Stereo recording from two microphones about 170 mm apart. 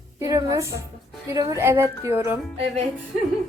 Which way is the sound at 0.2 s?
20° right (ahead or behind).